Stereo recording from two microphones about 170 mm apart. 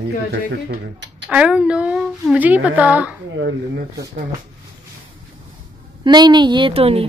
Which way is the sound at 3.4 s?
85° right.